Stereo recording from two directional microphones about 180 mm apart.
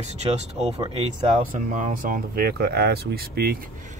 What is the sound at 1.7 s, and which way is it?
Speech, 45° right (ahead or behind).